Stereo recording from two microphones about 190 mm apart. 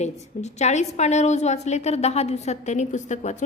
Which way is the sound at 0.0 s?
35° left (ahead or behind).